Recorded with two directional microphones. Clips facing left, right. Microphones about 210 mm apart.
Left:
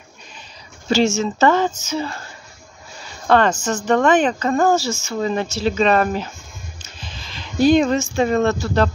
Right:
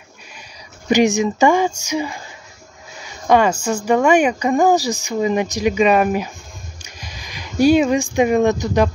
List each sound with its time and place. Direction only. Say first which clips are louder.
0.8 s speech: right 3 dB; 15° right (ahead or behind)
3.3 s speech: right 1 dB; 10° right (ahead or behind)